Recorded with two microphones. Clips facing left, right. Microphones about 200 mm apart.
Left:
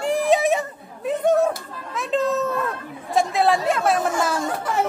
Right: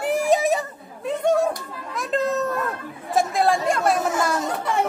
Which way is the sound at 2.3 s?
Centre (ahead or behind).